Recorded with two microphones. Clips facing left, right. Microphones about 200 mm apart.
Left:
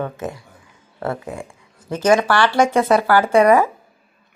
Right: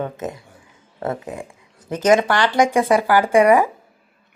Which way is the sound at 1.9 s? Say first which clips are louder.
Even; 20° right (ahead or behind).